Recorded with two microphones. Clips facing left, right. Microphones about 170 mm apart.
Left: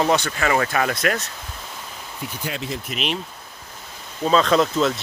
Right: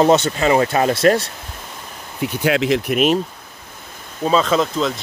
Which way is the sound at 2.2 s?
90° right.